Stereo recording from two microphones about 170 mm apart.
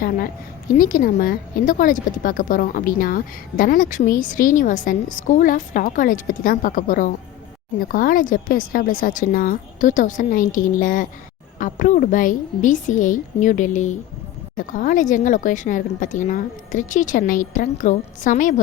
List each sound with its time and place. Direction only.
0.7 s speech: 55° left (ahead or behind)